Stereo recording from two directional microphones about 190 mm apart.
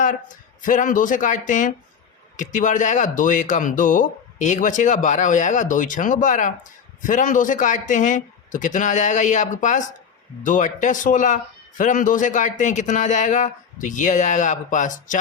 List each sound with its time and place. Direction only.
0.0 s speech: 45° left (ahead or behind)